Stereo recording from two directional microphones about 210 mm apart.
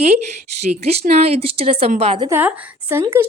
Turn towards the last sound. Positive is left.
turn(degrees=-10)  # may be behind; listen again after turning